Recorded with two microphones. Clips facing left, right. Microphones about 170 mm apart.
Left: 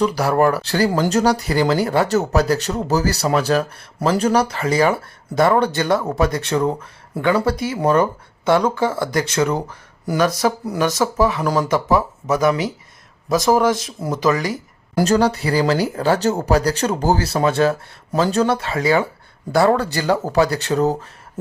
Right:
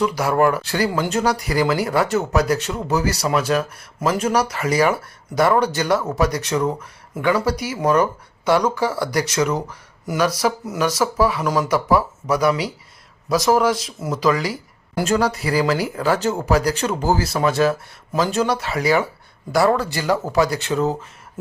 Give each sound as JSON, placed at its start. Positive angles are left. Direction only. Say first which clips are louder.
{"t": 0.0, "sound": "speech", "louder": "left 1 dB", "side_deg": 35}
{"t": 14.9, "sound": "speech", "louder": "left 3 dB", "side_deg": 35}